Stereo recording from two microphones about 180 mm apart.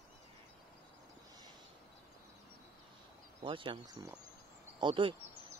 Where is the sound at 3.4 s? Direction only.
30° right (ahead or behind).